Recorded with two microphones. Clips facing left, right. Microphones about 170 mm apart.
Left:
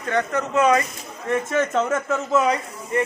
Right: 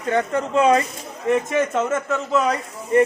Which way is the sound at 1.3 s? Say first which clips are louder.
Right 2 dB; 15° right (ahead or behind).